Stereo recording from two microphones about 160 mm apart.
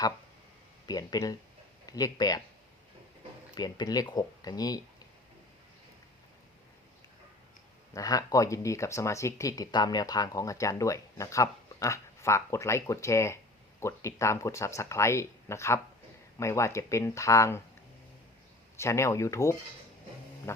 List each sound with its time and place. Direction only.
0.9 s speech: 25° left (ahead or behind)
3.5 s speech: 25° left (ahead or behind)
7.9 s speech: 20° left (ahead or behind)
18.8 s speech: 15° left (ahead or behind)